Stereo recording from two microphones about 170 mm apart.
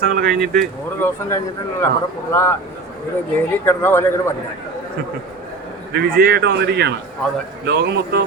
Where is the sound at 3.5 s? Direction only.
10° left (ahead or behind).